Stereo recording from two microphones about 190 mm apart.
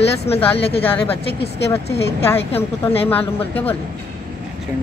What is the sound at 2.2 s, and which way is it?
Speech, 10° left (ahead or behind).